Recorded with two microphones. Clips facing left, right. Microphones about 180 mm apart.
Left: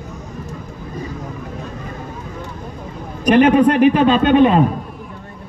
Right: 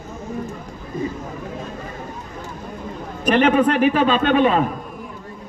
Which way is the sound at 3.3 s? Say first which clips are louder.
Left 4 dB; 10° left (ahead or behind).